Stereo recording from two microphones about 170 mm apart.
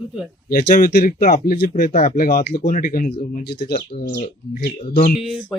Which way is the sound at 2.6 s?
50° left (ahead or behind).